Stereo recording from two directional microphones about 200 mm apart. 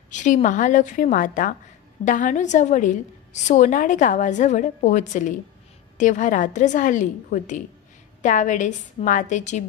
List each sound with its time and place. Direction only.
0.1 s a woman's voice: 40° left (ahead or behind)